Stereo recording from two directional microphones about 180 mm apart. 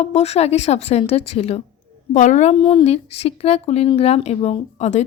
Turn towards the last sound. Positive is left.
turn(degrees=40)  # may be behind; listen again after turning